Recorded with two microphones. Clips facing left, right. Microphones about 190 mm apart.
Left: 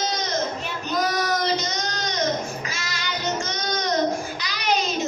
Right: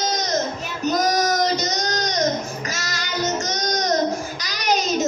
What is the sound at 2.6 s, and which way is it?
Music, 40° right (ahead or behind).